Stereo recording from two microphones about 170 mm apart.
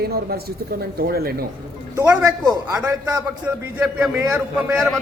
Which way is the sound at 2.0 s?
20° right (ahead or behind).